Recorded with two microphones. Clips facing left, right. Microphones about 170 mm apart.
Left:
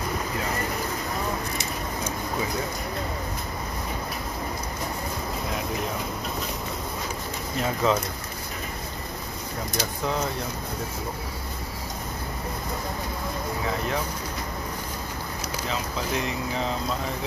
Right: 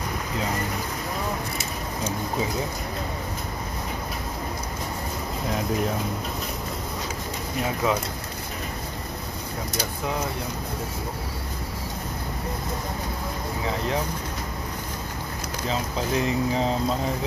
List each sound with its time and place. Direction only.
7.8 s speech: 10° right (ahead or behind)
16.3 s speech: 35° right (ahead or behind)